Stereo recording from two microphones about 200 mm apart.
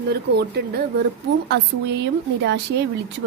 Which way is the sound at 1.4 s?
60° right (ahead or behind).